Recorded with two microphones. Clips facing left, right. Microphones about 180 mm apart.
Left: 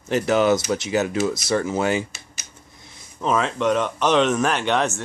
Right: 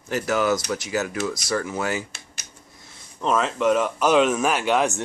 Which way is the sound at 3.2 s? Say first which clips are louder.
Even; centre (ahead or behind).